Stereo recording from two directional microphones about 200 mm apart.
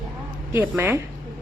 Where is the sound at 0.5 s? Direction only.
10° right (ahead or behind).